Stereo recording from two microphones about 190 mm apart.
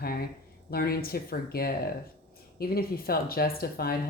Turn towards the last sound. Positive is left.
turn(degrees=50)  # may be behind; listen again after turning